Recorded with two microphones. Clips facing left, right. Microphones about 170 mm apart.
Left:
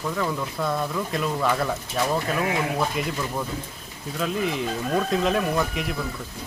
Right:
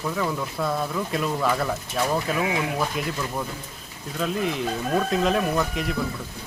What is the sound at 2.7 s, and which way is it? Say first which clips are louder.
Speech: left 1 dB; centre (ahead or behind).